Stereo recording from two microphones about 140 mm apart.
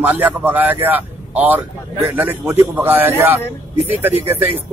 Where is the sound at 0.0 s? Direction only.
10° right (ahead or behind).